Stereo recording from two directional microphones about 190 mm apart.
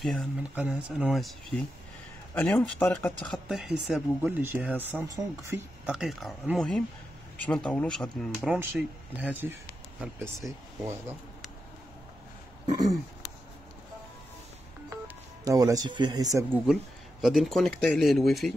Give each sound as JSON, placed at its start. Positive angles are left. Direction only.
{"t": 0.0, "sound": "speech", "side_deg": 0}
{"t": 5.9, "sound": "speech", "side_deg": 0}
{"t": 15.4, "sound": "speech", "side_deg": -20}
{"t": 17.2, "sound": "speech", "side_deg": 0}